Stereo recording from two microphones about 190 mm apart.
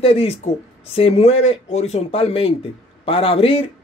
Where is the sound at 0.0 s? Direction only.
30° left (ahead or behind).